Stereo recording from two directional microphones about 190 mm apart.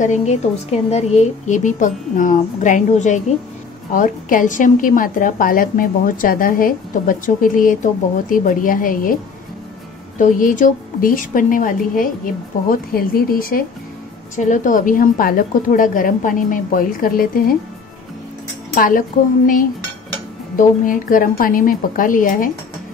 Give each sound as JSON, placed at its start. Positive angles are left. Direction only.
{"t": 0.0, "sound": "a woman's voice", "side_deg": 40}
{"t": 18.8, "sound": "a woman's voice", "side_deg": 45}